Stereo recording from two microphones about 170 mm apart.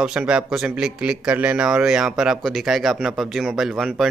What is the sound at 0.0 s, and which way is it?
Speech, 5° right (ahead or behind).